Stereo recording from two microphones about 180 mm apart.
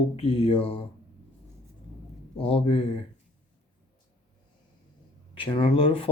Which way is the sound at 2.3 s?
30° left (ahead or behind).